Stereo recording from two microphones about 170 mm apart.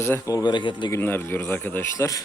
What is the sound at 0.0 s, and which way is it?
Speech, 20° left (ahead or behind).